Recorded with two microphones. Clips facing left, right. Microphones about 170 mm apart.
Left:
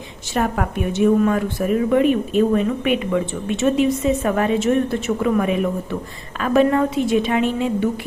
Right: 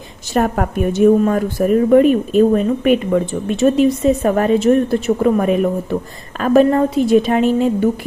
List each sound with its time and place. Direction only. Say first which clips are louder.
0.3 s a woman's voice: right 4 dB; 40° right (ahead or behind)